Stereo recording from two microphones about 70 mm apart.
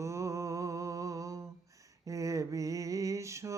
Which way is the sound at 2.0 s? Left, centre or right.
Right.